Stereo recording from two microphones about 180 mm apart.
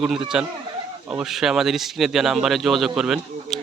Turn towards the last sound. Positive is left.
turn(degrees=-5)  # may be behind; listen again after turning